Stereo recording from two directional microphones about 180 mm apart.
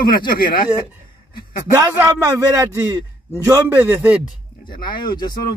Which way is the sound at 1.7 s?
15° right (ahead or behind).